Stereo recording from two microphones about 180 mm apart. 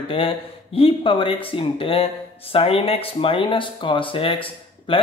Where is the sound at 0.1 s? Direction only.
30° left (ahead or behind).